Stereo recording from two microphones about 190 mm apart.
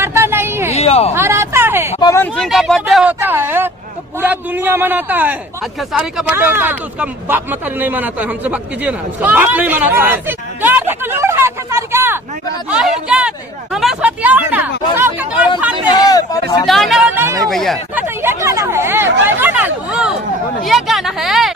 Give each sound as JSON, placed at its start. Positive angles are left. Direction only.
{"t": 0.0, "sound": "a sound", "side_deg": -10}
{"t": 0.7, "sound": "speech", "side_deg": 35}
{"t": 1.1, "sound": "a sound", "side_deg": -15}
{"t": 2.0, "sound": "speech", "side_deg": 15}
{"t": 15.9, "sound": "speech", "side_deg": 20}
{"t": 16.6, "sound": "speech", "side_deg": 0}
{"t": 17.5, "sound": "speech", "side_deg": 0}
{"t": 17.9, "sound": "speech", "side_deg": -10}